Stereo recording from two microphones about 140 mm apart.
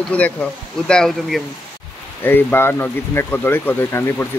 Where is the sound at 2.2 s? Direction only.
15° left (ahead or behind).